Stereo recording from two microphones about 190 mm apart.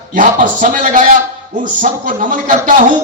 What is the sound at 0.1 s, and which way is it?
A man's voice, 45° right (ahead or behind).